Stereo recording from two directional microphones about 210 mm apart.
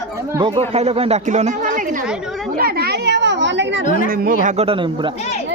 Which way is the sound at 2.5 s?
45° right (ahead or behind).